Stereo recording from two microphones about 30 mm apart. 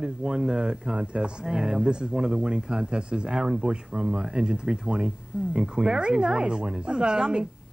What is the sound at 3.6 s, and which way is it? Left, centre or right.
Speech, right.